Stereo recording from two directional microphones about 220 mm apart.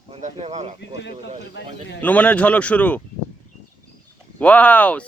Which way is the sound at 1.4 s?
50° left (ahead or behind).